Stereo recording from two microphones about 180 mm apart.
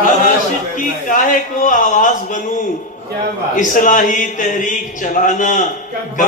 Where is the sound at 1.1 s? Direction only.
45° left (ahead or behind).